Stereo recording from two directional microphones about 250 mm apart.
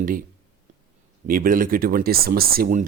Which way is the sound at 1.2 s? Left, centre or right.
Right.